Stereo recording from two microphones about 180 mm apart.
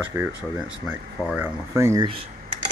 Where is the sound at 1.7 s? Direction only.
15° right (ahead or behind).